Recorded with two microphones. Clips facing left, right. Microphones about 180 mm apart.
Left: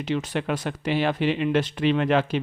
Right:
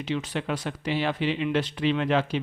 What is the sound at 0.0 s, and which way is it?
Speech, 50° left (ahead or behind).